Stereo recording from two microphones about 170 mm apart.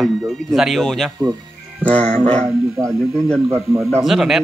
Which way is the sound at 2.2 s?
10° left (ahead or behind).